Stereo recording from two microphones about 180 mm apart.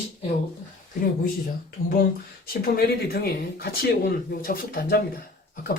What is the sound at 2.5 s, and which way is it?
Speech, 55° left (ahead or behind).